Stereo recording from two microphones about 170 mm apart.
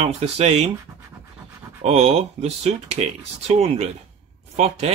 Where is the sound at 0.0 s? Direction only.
35° right (ahead or behind).